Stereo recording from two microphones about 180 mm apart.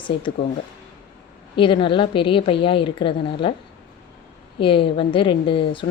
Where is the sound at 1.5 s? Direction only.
30° left (ahead or behind).